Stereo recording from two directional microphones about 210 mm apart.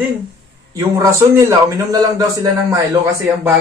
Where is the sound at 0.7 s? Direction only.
15° right (ahead or behind).